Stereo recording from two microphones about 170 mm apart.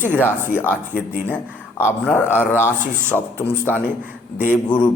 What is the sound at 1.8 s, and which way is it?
A man's voice, 10° left (ahead or behind).